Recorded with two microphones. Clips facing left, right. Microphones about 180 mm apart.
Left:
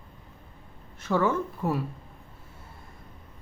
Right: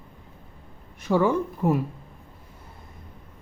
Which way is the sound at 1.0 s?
15° right (ahead or behind).